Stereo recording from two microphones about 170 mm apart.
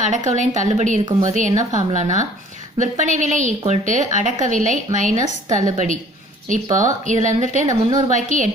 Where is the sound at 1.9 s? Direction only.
45° right (ahead or behind).